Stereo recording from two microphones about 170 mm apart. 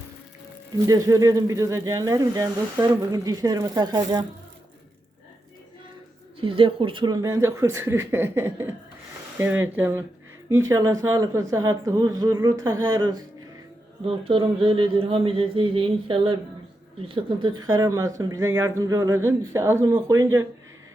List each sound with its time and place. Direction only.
0.9 s speech: 20° right (ahead or behind)
6.4 s speech: 30° right (ahead or behind)